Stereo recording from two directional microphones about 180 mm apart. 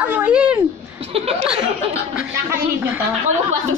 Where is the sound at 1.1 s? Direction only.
35° right (ahead or behind).